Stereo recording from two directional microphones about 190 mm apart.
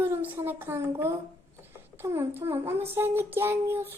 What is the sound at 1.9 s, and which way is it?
Speech, 15° right (ahead or behind).